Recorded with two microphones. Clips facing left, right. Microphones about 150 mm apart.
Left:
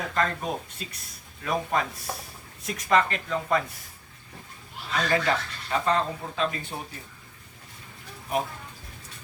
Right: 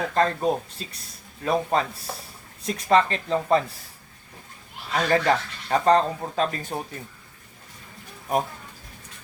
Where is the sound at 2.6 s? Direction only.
30° right (ahead or behind).